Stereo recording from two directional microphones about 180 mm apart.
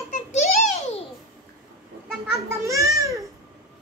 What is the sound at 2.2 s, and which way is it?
A child's voice, 15° right (ahead or behind).